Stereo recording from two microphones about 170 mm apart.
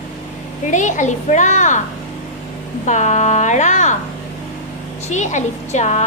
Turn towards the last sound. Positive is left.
turn(degrees=45)  # may be behind; listen again after turning